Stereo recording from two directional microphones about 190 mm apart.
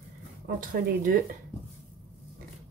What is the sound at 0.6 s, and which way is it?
Speech, 45° right (ahead or behind).